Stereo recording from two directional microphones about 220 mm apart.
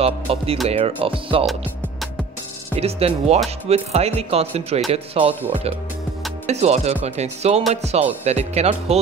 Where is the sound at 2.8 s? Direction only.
25° right (ahead or behind).